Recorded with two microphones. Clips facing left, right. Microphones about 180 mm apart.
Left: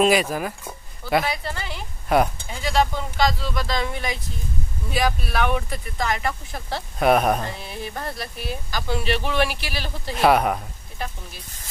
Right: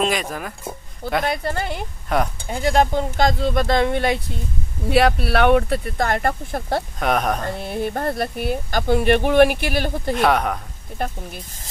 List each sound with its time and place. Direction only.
0.0 s speech: 5° left (ahead or behind)
1.2 s speech: 50° right (ahead or behind)
2.1 s speech: 5° left (ahead or behind)
2.4 s speech: 50° right (ahead or behind)
7.0 s speech: 5° left (ahead or behind)
7.4 s speech: 55° right (ahead or behind)
10.1 s speech: 5° left (ahead or behind)
11.0 s speech: 55° right (ahead or behind)